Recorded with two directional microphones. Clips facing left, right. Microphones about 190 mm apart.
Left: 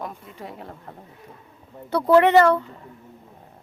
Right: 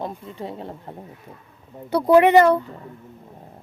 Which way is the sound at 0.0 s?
25° right (ahead or behind).